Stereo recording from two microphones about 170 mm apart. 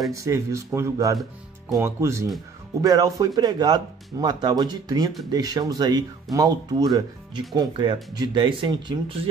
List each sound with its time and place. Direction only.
0.1 s speech: 20° right (ahead or behind)